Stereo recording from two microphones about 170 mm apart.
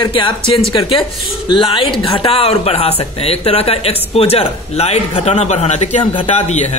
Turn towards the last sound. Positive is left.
turn(degrees=40)  # may be behind; listen again after turning